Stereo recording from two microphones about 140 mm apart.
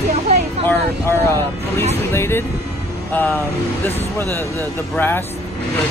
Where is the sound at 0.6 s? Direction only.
15° left (ahead or behind).